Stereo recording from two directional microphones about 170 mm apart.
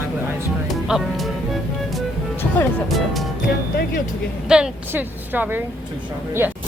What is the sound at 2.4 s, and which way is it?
Music, 15° left (ahead or behind).